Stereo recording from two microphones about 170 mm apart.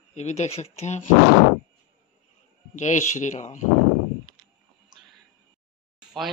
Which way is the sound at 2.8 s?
45° left (ahead or behind).